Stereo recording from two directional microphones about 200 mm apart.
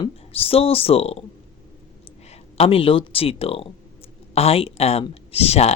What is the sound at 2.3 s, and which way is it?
Speech, 30° left (ahead or behind).